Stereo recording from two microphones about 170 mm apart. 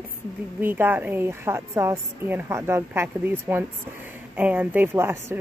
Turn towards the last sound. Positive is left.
turn(degrees=-15)  # may be behind; listen again after turning